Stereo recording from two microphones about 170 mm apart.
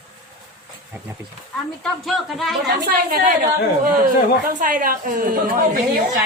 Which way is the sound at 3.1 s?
55° right (ahead or behind).